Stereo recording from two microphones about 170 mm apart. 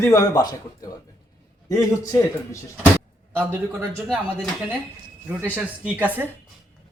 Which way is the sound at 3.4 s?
10° right (ahead or behind).